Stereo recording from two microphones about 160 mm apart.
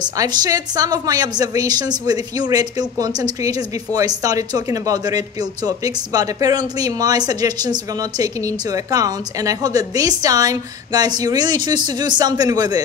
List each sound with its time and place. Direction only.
0.0 s speech: 25° right (ahead or behind)